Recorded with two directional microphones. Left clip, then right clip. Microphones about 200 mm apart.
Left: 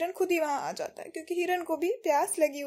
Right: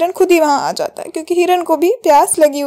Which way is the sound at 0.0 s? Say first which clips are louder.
Right 17 dB; 35° right (ahead or behind).